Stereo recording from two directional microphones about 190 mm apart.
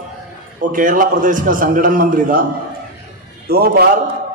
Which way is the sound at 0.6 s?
45° right (ahead or behind).